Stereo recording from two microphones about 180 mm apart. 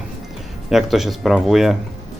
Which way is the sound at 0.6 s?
Centre (ahead or behind).